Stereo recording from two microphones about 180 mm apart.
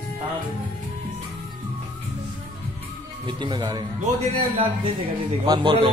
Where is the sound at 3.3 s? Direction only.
25° right (ahead or behind).